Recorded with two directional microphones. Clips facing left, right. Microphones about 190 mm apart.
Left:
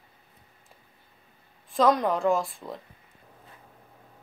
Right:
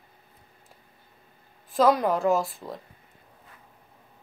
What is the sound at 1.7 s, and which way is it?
Speech, 5° right (ahead or behind).